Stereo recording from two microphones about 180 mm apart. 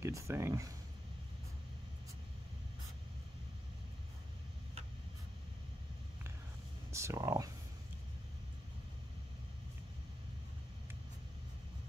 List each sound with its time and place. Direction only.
0.0 s speech: 15° right (ahead or behind)
6.9 s speech: 15° right (ahead or behind)